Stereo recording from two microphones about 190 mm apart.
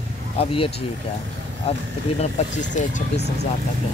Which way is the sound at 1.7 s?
35° left (ahead or behind).